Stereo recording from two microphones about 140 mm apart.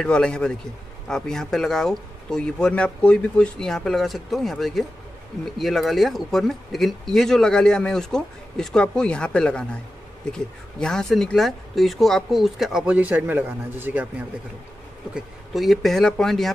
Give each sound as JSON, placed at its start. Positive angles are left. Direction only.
{"t": 0.0, "sound": "a man's voice", "side_deg": 5}
{"t": 15.1, "sound": "speech", "side_deg": 0}